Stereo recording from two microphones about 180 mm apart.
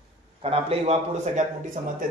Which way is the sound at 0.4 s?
35° right (ahead or behind).